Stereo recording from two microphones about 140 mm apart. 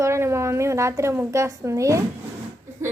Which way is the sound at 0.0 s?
20° right (ahead or behind).